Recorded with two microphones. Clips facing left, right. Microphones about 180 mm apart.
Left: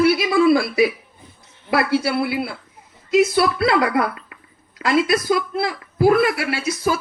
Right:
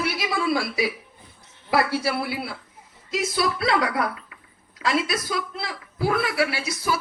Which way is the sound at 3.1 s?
60° left (ahead or behind).